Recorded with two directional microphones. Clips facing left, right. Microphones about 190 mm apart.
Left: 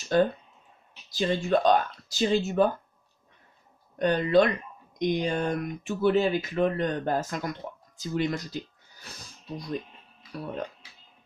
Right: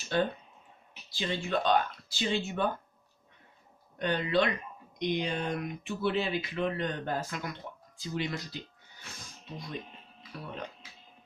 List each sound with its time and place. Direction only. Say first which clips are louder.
0.1 s speech: left 6 dB; 45° left (ahead or behind)
4.0 s speech: left 7 dB; 45° left (ahead or behind)
10.3 s speech: left 7 dB; 40° left (ahead or behind)